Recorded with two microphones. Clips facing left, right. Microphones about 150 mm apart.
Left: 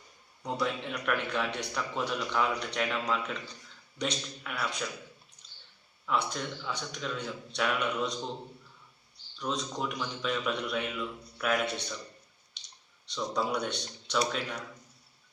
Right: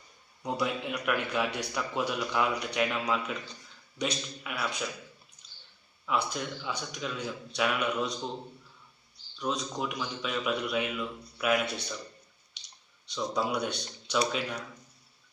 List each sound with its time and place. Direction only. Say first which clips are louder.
0.4 s speech: right 1 dB; 10° right (ahead or behind)
6.1 s speech: right 1 dB; 5° right (ahead or behind)
9.4 s speech: right 1 dB; 5° right (ahead or behind)
12.6 s clicking: even; 5° right (ahead or behind)
13.1 s speech: right 1 dB; 5° right (ahead or behind)